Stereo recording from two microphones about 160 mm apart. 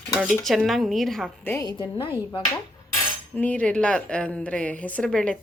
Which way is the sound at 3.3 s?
10° left (ahead or behind).